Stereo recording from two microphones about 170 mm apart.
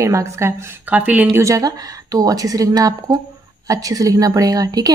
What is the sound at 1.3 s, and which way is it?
A woman's voice, 20° right (ahead or behind).